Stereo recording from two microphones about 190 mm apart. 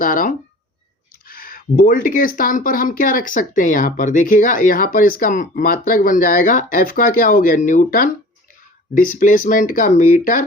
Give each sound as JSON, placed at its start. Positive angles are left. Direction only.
{"t": 0.0, "sound": "speech", "side_deg": 45}